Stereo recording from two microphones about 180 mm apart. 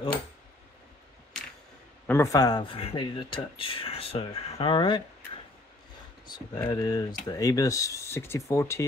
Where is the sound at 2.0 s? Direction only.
15° left (ahead or behind).